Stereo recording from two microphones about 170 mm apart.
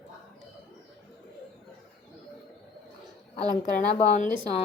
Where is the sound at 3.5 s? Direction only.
45° left (ahead or behind).